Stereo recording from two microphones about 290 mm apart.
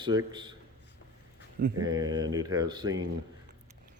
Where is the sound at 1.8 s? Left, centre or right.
Centre.